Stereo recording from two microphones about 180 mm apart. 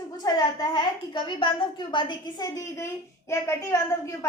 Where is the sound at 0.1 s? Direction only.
20° left (ahead or behind).